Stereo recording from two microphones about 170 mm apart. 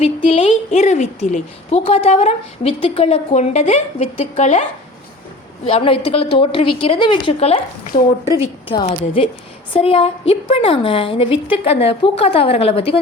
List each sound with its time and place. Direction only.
0.0 s a woman's voice: 35° left (ahead or behind)
5.6 s a woman's voice: 30° left (ahead or behind)